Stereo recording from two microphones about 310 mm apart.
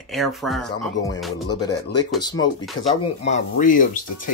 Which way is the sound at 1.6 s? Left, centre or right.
Centre.